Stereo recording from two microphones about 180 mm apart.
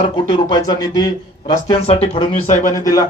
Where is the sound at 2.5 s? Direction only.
45° left (ahead or behind).